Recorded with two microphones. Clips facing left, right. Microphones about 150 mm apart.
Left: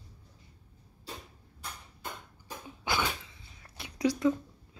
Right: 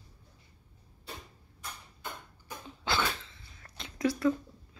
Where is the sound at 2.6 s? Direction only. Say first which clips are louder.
Even; 15° left (ahead or behind).